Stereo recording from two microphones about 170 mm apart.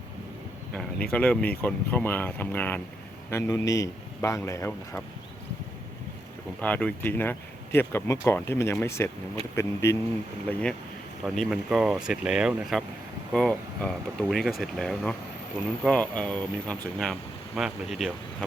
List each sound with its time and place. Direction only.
0.7 s speech: 5° left (ahead or behind)
6.6 s speech: 10° left (ahead or behind)
11.3 s speech: centre (ahead or behind)